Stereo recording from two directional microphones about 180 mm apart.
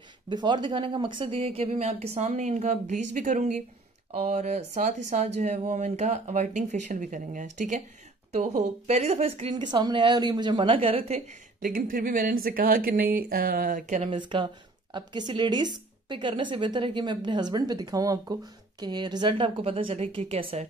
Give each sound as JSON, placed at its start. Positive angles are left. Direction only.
{"t": 0.3, "sound": "a woman's voice", "side_deg": -25}
{"t": 14.1, "sound": "speech", "side_deg": -25}